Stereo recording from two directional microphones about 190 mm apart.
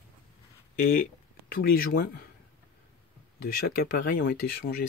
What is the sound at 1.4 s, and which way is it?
Speech, 50° left (ahead or behind).